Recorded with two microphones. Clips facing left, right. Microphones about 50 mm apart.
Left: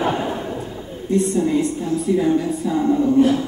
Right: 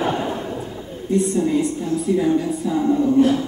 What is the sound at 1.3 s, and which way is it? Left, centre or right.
Speech, centre.